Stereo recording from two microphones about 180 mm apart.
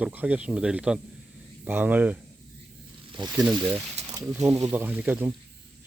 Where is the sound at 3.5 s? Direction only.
15° right (ahead or behind).